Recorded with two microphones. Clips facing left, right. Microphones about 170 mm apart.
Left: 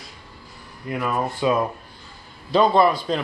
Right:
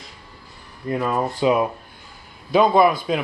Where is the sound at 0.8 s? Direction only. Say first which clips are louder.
Right 2 dB; 25° right (ahead or behind).